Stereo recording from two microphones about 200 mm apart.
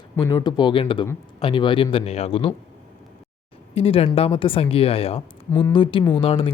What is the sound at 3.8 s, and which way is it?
Speech, 30° left (ahead or behind).